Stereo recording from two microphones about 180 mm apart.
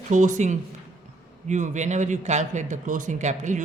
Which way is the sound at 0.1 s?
45° right (ahead or behind).